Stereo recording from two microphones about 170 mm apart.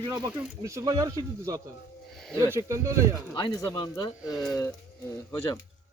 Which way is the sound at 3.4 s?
25° left (ahead or behind).